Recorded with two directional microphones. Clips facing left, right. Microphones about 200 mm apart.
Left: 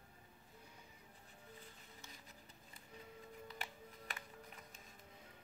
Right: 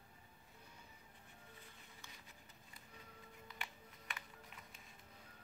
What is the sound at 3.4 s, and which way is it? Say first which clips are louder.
Music: left 1 dB; 35° left (ahead or behind).